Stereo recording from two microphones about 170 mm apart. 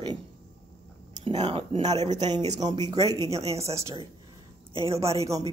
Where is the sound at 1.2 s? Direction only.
30° right (ahead or behind).